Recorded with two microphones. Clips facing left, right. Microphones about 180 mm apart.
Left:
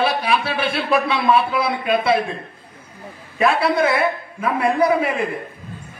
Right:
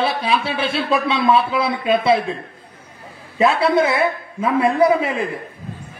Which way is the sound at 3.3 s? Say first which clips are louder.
Right 2 dB; 25° right (ahead or behind).